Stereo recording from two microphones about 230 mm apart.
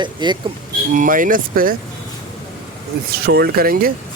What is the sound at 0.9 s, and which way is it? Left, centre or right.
Speech, right.